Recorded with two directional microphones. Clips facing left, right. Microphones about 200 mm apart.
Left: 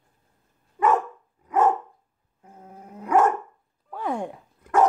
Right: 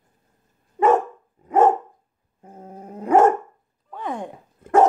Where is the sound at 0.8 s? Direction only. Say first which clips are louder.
Right 4 dB; 25° right (ahead or behind).